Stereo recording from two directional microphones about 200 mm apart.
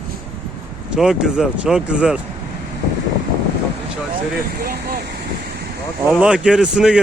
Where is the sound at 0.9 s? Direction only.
5° right (ahead or behind).